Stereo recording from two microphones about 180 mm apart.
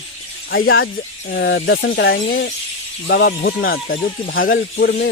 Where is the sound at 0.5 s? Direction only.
75° left (ahead or behind).